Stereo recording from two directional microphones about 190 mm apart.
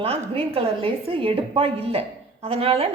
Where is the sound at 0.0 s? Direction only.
30° right (ahead or behind).